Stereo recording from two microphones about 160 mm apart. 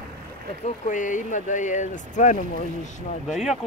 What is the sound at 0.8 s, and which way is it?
Speech, 50° left (ahead or behind).